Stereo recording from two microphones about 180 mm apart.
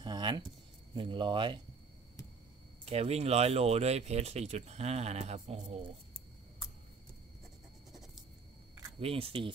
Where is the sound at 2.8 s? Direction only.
35° right (ahead or behind).